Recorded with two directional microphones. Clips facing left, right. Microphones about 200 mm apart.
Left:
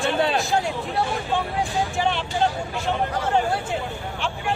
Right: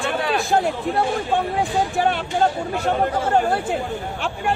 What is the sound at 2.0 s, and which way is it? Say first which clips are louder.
Speech: right 3 dB; 50° right (ahead or behind).